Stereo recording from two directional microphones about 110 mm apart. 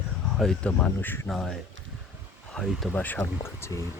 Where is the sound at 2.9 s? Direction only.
15° left (ahead or behind).